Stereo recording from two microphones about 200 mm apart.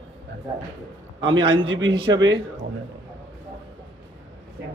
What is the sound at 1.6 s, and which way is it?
Speech, 75° right (ahead or behind).